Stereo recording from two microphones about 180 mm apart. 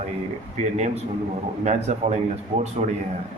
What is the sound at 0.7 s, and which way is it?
A man's voice, 40° right (ahead or behind).